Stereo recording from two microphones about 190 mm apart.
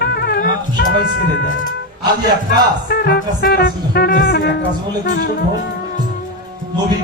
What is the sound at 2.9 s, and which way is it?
Music, 50° left (ahead or behind).